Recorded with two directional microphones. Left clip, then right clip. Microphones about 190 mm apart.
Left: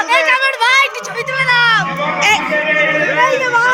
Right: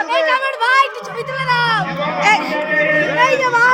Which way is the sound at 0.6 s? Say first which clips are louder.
Left 2 dB; 25° right (ahead or behind).